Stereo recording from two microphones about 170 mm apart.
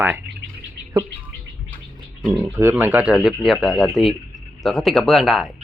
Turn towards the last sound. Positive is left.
turn(degrees=0)  # may be behind; listen again after turning